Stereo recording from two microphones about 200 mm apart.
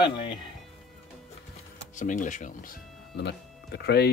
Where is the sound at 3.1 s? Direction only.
55° left (ahead or behind).